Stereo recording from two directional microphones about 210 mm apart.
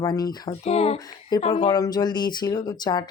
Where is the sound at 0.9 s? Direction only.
20° left (ahead or behind).